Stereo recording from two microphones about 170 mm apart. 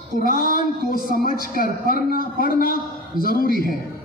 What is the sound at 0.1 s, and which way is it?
A man's voice, 55° left (ahead or behind).